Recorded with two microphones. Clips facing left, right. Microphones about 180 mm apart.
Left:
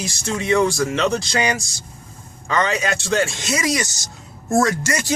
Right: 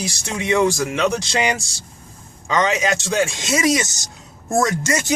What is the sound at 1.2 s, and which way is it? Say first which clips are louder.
Speech: even; 20° right (ahead or behind).